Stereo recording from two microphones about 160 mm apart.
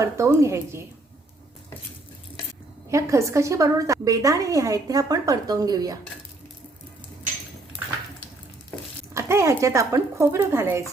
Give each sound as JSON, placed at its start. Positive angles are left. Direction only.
{"t": 0.3, "sound": "a woman's voice", "side_deg": -15}
{"t": 2.9, "sound": "a woman's voice", "side_deg": -20}
{"t": 9.1, "sound": "a woman's voice", "side_deg": -15}